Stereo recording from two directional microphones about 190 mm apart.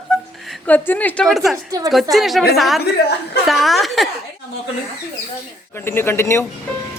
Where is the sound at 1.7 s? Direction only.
20° right (ahead or behind).